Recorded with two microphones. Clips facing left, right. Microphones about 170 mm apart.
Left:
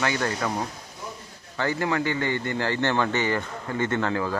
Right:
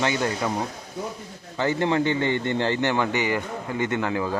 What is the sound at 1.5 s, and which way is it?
Speech, 20° right (ahead or behind).